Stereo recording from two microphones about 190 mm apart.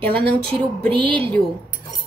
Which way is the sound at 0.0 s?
5° left (ahead or behind).